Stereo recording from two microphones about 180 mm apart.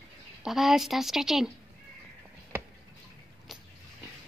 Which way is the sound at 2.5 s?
15° right (ahead or behind).